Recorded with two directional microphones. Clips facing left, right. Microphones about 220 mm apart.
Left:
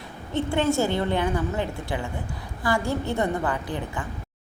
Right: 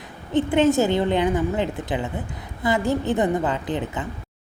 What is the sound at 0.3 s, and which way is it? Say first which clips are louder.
A woman's voice: right 5 dB; 20° right (ahead or behind).